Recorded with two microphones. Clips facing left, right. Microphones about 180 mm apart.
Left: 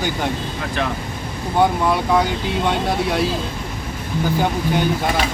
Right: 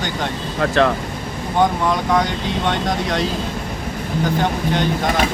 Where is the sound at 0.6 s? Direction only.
65° right (ahead or behind).